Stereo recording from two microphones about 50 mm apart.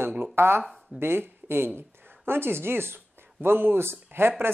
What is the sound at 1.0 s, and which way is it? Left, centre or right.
Speech, right.